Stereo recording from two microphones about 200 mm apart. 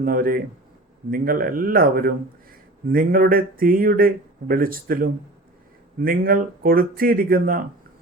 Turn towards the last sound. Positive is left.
turn(degrees=-45)  # may be behind; listen again after turning